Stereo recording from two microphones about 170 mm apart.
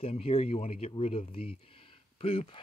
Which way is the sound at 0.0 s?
35° left (ahead or behind).